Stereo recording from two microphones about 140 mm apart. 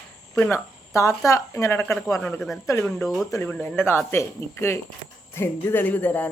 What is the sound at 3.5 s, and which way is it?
Speech, 15° left (ahead or behind).